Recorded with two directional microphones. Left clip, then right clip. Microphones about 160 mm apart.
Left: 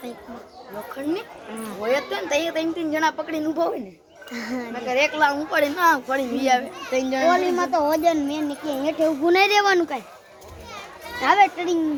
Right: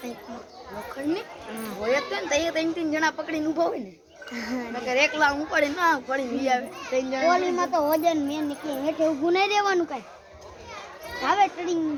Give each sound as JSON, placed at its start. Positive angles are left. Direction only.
{"t": 1.8, "sound": "a child's voice", "side_deg": 35}
{"t": 5.3, "sound": "a child's voice", "side_deg": 40}
{"t": 7.3, "sound": "a child's voice", "side_deg": 30}
{"t": 11.2, "sound": "a child's voice", "side_deg": 45}